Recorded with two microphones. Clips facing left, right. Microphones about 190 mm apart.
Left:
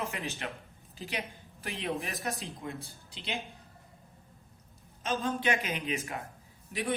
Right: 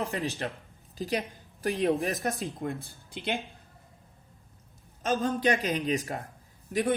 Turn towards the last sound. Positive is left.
turn(degrees=-45)  # may be behind; listen again after turning